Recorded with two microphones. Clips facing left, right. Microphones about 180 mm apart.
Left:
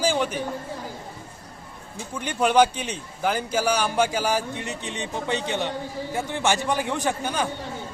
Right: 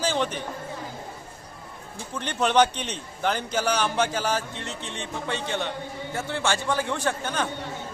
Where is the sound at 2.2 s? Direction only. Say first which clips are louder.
Left 2 dB; 10° left (ahead or behind).